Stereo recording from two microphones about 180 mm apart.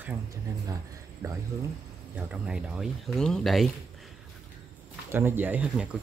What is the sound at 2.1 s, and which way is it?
Speech, 5° right (ahead or behind).